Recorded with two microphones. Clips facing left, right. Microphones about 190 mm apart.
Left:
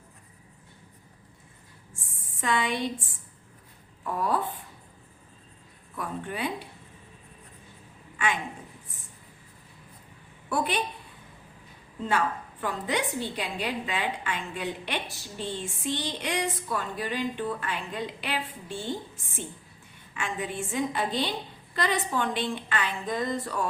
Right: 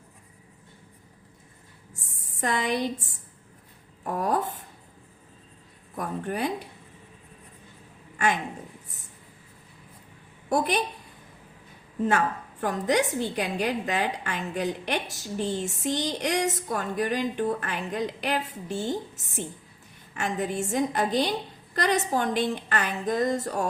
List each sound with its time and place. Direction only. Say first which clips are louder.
2.0 s a sound: right 5 dB; 40° right (ahead or behind)
4.0 s a woman's voice: right 2 dB; 45° right (ahead or behind)
6.0 s a woman's voice: right 3 dB; 45° right (ahead or behind)
8.1 s a sound: right 3 dB; 40° right (ahead or behind)
10.5 s a woman's voice: right 3 dB; 40° right (ahead or behind)
12.0 s a woman's voice: right 3 dB; 45° right (ahead or behind)